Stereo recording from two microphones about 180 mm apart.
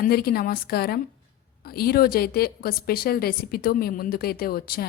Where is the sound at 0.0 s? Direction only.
55° left (ahead or behind).